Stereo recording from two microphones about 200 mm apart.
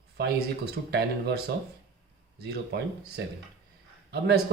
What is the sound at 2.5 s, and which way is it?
Speech, 55° right (ahead or behind).